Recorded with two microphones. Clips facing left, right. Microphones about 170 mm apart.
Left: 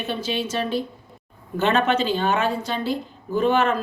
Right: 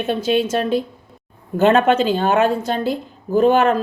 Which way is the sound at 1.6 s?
45° right (ahead or behind).